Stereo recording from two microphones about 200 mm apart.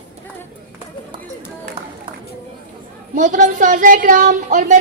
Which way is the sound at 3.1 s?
40° right (ahead or behind).